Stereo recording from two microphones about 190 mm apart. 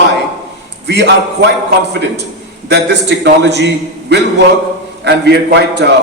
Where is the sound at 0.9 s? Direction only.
65° right (ahead or behind).